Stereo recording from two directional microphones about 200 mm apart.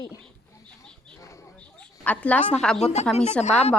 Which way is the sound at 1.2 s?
15° left (ahead or behind).